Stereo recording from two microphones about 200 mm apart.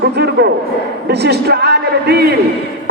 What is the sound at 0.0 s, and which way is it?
A man's voice, 55° right (ahead or behind).